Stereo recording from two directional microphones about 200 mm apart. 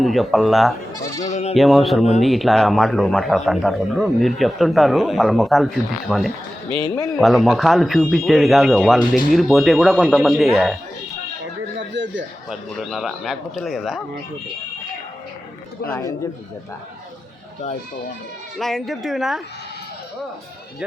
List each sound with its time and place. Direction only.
0.0 s speech: centre (ahead or behind)
1.0 s goat: 15° left (ahead or behind)
1.3 s speech: 35° left (ahead or behind)
1.5 s speech: centre (ahead or behind)
6.8 s speech: 20° left (ahead or behind)
7.2 s speech: centre (ahead or behind)
12.5 s speech: centre (ahead or behind)
15.9 s a man's voice: 15° left (ahead or behind)
18.6 s speech: centre (ahead or behind)